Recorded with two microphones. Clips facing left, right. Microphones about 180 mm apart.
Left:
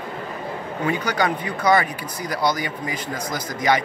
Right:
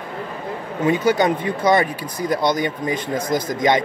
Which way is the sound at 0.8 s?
25° right (ahead or behind).